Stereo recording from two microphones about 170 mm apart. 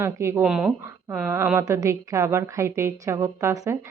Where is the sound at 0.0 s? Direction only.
15° right (ahead or behind).